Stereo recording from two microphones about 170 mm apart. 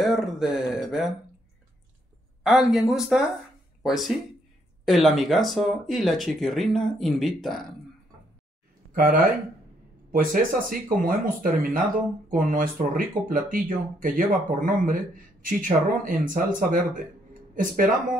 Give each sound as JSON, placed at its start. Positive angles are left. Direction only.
{"t": 0.0, "sound": "speech", "side_deg": 0}
{"t": 2.4, "sound": "speech", "side_deg": 0}
{"t": 8.9, "sound": "speech", "side_deg": -55}